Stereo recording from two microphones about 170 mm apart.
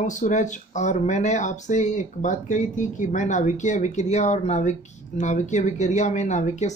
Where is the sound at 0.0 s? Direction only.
45° left (ahead or behind).